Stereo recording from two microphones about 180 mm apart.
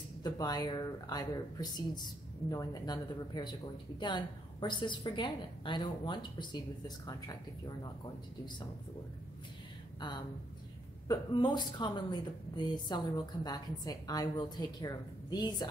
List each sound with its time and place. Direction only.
0.2 s a woman's voice: 20° left (ahead or behind)
9.9 s a woman's voice: 25° left (ahead or behind)